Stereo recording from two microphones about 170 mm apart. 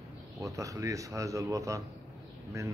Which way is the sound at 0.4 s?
20° right (ahead or behind).